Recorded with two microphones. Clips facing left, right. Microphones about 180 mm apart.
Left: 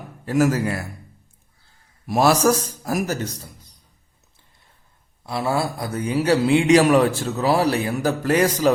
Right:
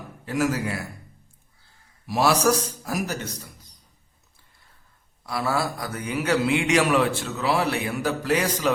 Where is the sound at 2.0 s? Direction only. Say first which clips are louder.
Left 4 dB; 45° left (ahead or behind).